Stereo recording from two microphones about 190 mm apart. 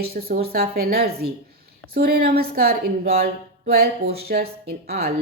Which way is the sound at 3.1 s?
50° right (ahead or behind).